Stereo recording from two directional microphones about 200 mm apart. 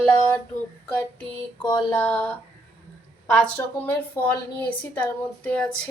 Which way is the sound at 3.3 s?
5° left (ahead or behind).